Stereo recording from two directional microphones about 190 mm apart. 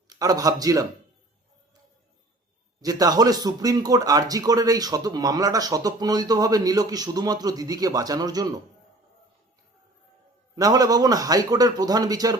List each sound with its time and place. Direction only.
0.1 s speech: 20° right (ahead or behind)
2.8 s speech: 20° right (ahead or behind)
10.5 s speech: 20° right (ahead or behind)